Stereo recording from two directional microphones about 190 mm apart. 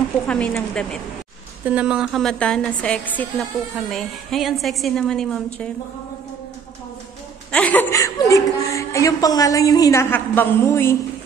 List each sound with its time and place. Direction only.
0.3 s a woman's voice: 5° left (ahead or behind)
1.7 s a woman's voice: 5° right (ahead or behind)
7.5 s a woman's voice: 10° left (ahead or behind)